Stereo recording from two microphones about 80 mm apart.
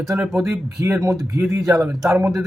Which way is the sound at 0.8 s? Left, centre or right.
Right.